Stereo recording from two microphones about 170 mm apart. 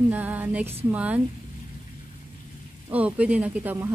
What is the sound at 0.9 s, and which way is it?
Speech, 10° right (ahead or behind).